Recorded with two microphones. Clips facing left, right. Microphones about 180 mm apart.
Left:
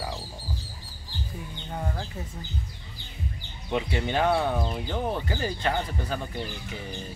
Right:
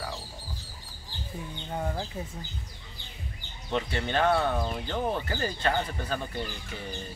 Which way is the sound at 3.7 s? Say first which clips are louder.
Left 2 dB; 15° left (ahead or behind).